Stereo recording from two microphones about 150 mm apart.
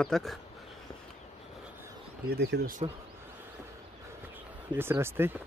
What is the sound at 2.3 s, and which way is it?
Speech, 90° right.